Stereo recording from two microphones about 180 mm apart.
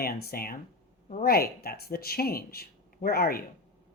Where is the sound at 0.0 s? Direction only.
55° left (ahead or behind).